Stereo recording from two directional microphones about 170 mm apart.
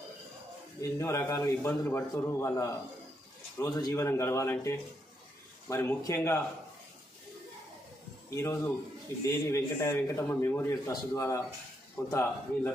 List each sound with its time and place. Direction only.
0.7 s a man's voice: 20° left (ahead or behind)
8.4 s a man's voice: 15° left (ahead or behind)